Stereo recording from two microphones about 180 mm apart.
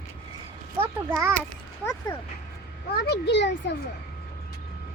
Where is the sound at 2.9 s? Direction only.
65° left (ahead or behind).